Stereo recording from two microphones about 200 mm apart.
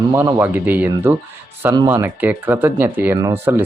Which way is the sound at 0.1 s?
10° right (ahead or behind).